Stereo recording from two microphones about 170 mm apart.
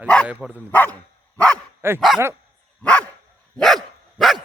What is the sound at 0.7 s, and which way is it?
Speech, 10° left (ahead or behind).